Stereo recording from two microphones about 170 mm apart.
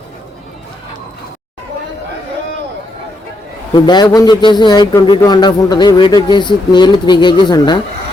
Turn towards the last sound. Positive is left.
turn(degrees=25)  # may be behind; listen again after turning